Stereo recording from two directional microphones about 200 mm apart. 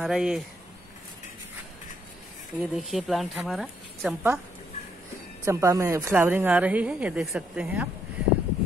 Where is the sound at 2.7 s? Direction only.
Centre (ahead or behind).